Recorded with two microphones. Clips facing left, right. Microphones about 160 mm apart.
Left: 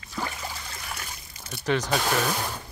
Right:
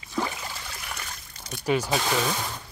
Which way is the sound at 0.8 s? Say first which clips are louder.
Even; 5° left (ahead or behind).